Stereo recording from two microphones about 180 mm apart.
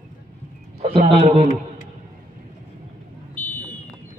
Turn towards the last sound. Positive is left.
turn(degrees=10)  # may be behind; listen again after turning